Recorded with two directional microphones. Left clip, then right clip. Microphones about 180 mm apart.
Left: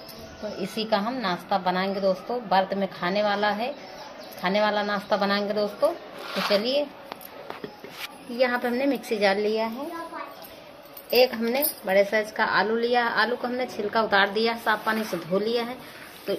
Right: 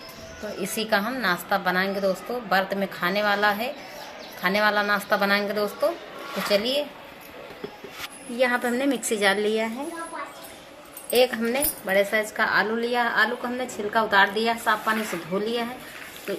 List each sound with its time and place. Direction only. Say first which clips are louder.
0.6 s a woman's voice: right 2 dB; 10° left (ahead or behind)
8.4 s a woman's voice: right 1 dB; centre (ahead or behind)
11.1 s a woman's voice: even; 5° right (ahead or behind); by 15.6 s 25° left (ahead or behind)